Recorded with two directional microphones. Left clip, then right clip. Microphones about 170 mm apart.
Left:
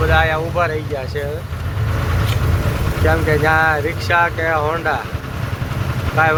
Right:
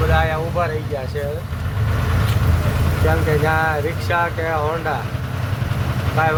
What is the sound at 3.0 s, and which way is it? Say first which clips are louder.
Speech: left 3 dB; 10° right (ahead or behind).